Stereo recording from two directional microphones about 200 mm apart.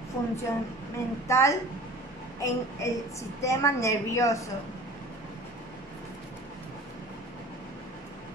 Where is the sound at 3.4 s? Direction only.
15° left (ahead or behind).